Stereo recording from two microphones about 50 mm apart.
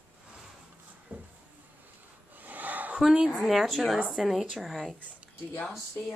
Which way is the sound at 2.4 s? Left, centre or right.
Right.